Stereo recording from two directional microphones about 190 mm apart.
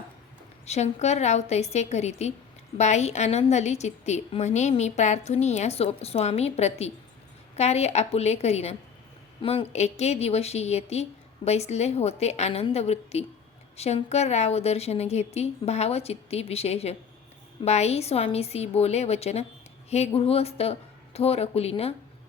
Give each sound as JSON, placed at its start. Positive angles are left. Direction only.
{"t": 0.6, "sound": "a woman's voice", "side_deg": 35}